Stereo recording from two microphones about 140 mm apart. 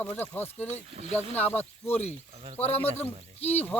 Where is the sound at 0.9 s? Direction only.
45° right (ahead or behind).